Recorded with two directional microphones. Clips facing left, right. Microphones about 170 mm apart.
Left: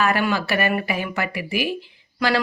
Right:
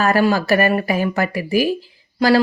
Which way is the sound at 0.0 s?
40° right (ahead or behind).